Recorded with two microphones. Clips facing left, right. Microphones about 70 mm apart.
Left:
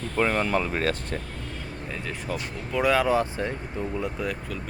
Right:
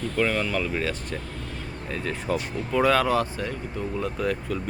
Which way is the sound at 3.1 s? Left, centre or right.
Left.